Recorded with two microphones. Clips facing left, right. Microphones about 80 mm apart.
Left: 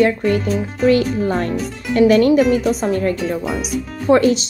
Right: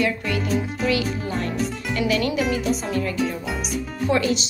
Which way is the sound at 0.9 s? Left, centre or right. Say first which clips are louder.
Left 10 dB; left.